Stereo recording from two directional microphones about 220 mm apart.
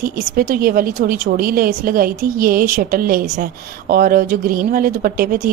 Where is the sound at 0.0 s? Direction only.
40° right (ahead or behind).